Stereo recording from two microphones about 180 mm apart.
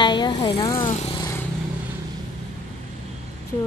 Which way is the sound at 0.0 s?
25° left (ahead or behind).